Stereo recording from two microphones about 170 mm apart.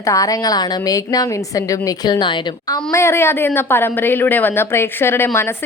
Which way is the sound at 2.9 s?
15° left (ahead or behind).